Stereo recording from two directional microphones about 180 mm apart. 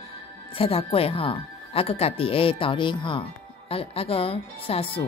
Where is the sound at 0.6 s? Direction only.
30° left (ahead or behind).